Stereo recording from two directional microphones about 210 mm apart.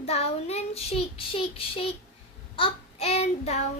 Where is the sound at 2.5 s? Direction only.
25° left (ahead or behind).